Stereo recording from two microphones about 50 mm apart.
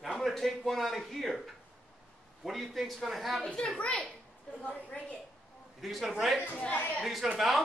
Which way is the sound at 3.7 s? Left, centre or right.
Left.